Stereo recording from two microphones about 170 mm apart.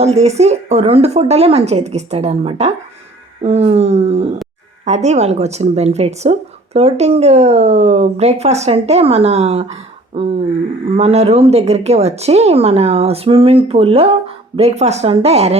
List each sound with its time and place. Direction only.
0.0 s a woman's voice: 40° right (ahead or behind)